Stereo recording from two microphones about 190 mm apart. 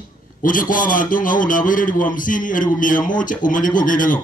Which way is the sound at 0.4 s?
45° left (ahead or behind).